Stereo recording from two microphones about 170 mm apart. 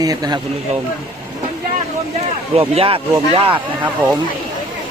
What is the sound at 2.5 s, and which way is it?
A man's voice, 35° right (ahead or behind).